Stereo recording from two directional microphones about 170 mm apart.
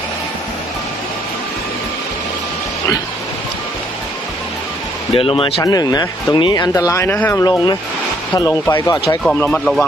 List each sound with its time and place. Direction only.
5.1 s speech: 35° left (ahead or behind)
9.2 s speech: 5° left (ahead or behind)